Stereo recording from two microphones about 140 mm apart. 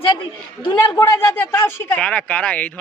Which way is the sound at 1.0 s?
15° left (ahead or behind).